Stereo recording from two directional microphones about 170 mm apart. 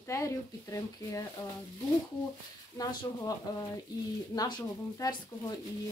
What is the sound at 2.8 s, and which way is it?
Speech, 25° left (ahead or behind).